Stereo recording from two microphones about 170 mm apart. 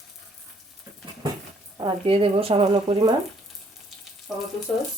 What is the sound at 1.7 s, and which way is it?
Speech, 30° right (ahead or behind).